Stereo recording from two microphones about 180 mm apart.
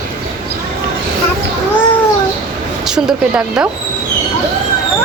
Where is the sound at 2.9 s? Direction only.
5° right (ahead or behind).